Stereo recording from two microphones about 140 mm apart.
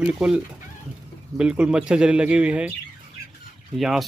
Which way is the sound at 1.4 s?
5° right (ahead or behind).